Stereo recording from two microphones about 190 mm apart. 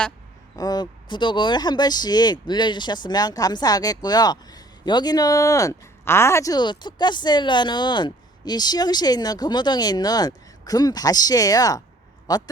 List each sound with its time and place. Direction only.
0.5 s speech: 20° left (ahead or behind)